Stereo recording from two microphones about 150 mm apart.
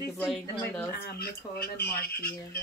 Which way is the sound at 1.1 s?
90° left.